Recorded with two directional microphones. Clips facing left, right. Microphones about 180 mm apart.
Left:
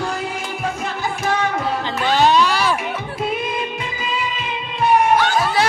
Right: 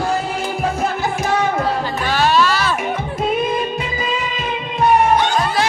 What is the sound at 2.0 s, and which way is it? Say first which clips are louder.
Music: left 1 dB; 20° left (ahead or behind).